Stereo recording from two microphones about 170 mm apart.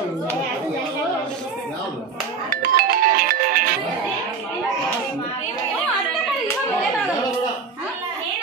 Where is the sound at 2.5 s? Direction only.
60° right (ahead or behind).